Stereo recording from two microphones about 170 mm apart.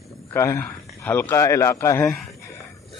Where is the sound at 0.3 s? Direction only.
15° left (ahead or behind).